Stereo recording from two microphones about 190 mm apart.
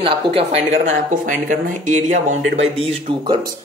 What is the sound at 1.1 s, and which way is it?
Speech, 40° right (ahead or behind).